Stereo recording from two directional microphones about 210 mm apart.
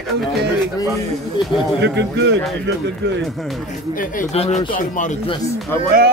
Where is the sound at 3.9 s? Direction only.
35° left (ahead or behind).